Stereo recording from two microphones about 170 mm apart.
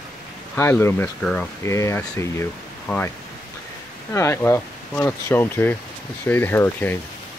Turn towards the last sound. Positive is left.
turn(degrees=10)  # may be behind; listen again after turning